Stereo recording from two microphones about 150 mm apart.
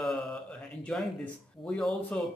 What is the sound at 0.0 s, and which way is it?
Mantra, 5° left (ahead or behind).